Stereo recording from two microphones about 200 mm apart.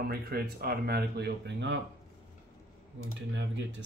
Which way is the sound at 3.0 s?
65° right (ahead or behind).